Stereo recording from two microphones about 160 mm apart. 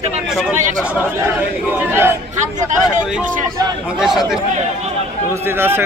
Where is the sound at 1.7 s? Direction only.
15° right (ahead or behind).